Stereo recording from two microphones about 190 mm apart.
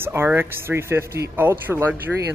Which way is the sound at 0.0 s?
10° right (ahead or behind).